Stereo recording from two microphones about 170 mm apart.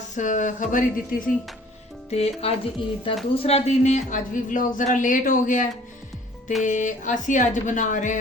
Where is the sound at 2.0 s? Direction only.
40° left (ahead or behind).